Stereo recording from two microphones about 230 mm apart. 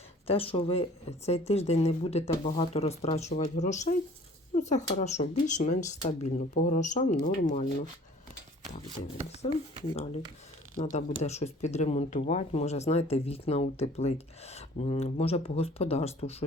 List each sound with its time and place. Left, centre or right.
0.3 s speech: left
10.8 s speech: left